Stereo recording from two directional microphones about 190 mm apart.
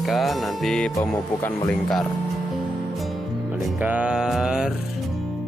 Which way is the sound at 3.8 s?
5° right (ahead or behind).